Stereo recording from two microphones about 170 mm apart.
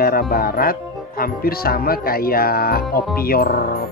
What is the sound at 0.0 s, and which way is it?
Wind chime, 60° left (ahead or behind).